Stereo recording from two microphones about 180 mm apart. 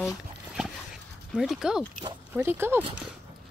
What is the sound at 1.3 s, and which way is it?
Speech, centre (ahead or behind).